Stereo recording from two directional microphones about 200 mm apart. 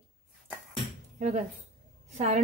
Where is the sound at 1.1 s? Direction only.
35° right (ahead or behind).